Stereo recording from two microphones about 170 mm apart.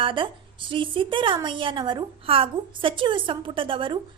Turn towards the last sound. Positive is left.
turn(degrees=-30)  # may be behind; listen again after turning